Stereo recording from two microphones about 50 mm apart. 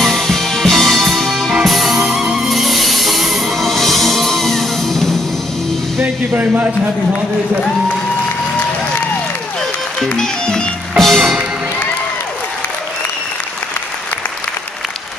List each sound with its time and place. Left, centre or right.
0.0 s music: centre
6.3 s a man's voice: right
10.1 s music: centre
11.0 s music: centre